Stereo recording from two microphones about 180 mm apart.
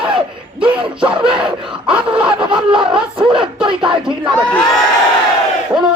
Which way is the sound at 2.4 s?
25° right (ahead or behind).